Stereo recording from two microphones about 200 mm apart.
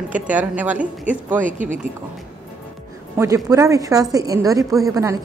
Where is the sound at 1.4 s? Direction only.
40° right (ahead or behind).